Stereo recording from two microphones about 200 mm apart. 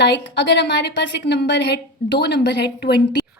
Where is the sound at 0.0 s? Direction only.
60° left (ahead or behind).